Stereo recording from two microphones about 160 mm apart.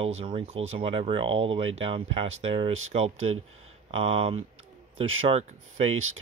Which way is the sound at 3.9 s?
35° right (ahead or behind).